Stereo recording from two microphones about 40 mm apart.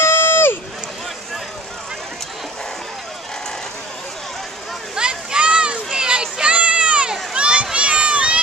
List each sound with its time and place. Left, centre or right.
0.1 s run: left
4.9 s a sound: right
7.7 s run: right